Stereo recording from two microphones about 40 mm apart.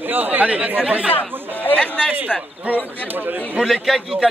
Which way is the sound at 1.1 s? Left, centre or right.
Left.